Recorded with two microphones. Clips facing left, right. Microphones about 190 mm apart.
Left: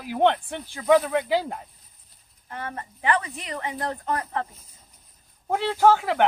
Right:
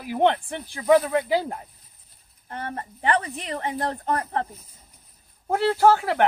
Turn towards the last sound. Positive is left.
turn(degrees=-5)  # may be behind; listen again after turning